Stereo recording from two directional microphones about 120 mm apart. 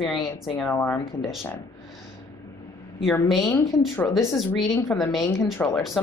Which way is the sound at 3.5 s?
15° left (ahead or behind).